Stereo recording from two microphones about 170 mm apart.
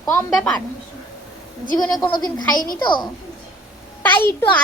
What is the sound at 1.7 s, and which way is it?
Speech, 20° left (ahead or behind).